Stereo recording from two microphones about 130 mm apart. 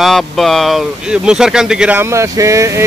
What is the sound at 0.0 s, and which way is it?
Speech, centre (ahead or behind).